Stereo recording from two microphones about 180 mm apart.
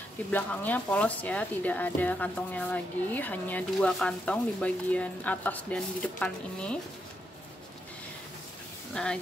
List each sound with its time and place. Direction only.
0.3 s speech: 10° left (ahead or behind)
8.9 s speech: 5° left (ahead or behind)